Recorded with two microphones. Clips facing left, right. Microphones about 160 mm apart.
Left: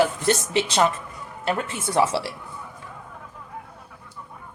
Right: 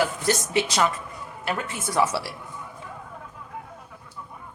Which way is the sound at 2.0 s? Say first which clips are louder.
Left 2 dB; 25° left (ahead or behind).